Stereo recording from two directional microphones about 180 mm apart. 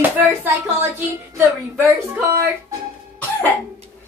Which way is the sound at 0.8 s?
15° right (ahead or behind).